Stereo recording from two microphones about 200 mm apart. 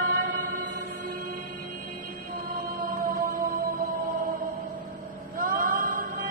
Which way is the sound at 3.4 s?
45° right (ahead or behind).